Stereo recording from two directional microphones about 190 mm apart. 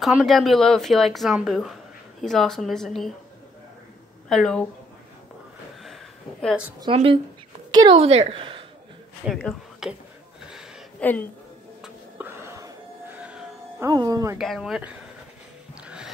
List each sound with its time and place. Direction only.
0.0 s speech: centre (ahead or behind)
4.3 s speech: centre (ahead or behind)
6.4 s speech: 5° right (ahead or behind)
6.8 s a woman's voice: 30° right (ahead or behind)
9.3 s speech: centre (ahead or behind)
10.5 s a sound: 5° left (ahead or behind)
11.8 s a sound: 10° right (ahead or behind)
13.2 s music: 5° right (ahead or behind)
13.8 s speech: 20° right (ahead or behind)
14.4 s speech: centre (ahead or behind)
15.8 s a sound: 5° right (ahead or behind)